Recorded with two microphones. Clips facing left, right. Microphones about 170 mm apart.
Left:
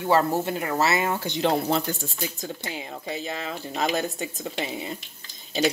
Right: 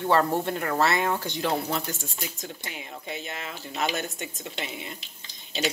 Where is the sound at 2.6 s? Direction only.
30° left (ahead or behind).